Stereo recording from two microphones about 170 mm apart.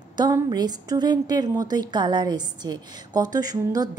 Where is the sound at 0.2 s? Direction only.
25° right (ahead or behind).